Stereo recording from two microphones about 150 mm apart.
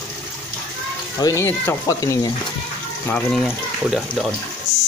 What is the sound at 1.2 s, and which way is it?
Speech, 20° left (ahead or behind).